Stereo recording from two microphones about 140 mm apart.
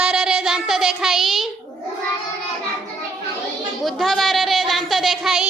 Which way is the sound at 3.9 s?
Centre (ahead or behind).